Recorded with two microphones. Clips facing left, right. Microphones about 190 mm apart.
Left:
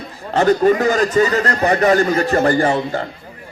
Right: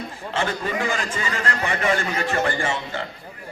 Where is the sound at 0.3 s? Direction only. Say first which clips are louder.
Left 12 dB; 45° left (ahead or behind).